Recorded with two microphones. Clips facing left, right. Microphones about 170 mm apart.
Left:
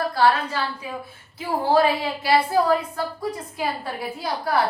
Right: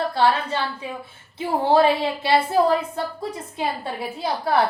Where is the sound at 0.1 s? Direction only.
25° right (ahead or behind).